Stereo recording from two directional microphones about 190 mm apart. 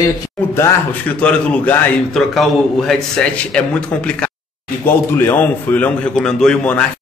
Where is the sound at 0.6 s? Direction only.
10° left (ahead or behind).